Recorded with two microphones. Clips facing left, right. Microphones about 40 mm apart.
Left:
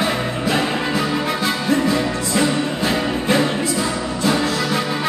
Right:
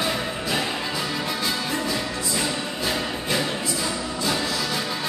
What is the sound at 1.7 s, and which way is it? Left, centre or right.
Music, left.